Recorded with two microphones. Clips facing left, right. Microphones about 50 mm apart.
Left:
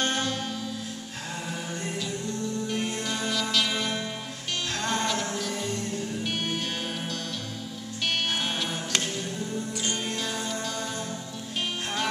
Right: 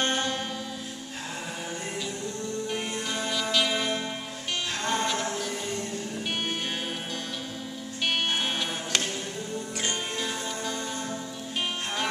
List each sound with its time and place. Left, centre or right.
0.0 s music: centre
2.7 s music: centre